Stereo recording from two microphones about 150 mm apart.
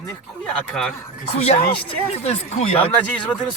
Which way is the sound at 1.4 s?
45° left (ahead or behind).